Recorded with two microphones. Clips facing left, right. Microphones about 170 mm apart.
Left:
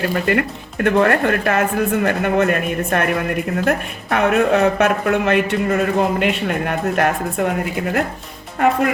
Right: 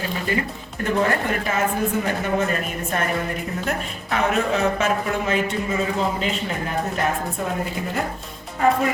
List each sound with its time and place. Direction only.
0.1 s speech: 65° left (ahead or behind)